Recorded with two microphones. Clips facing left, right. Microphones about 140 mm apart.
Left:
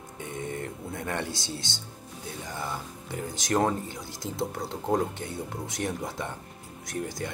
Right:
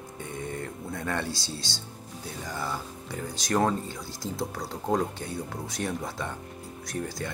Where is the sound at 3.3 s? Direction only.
20° left (ahead or behind).